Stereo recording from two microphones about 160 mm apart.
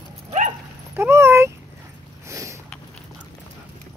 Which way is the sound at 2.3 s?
20° right (ahead or behind).